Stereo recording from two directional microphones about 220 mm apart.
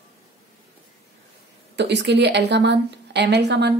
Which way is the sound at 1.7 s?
50° right (ahead or behind).